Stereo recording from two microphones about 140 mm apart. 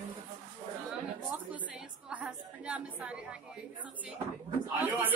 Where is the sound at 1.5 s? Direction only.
10° right (ahead or behind).